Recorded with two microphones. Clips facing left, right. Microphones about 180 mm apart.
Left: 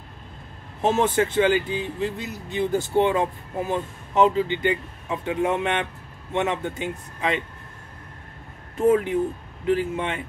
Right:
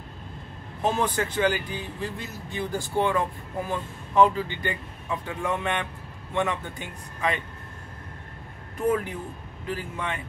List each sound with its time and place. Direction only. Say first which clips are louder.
0.8 s speech: left 5 dB; 25° left (ahead or behind)
8.7 s speech: left 6 dB; 25° left (ahead or behind)